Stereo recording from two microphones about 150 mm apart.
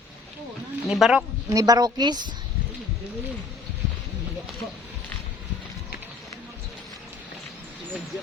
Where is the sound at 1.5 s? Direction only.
25° right (ahead or behind).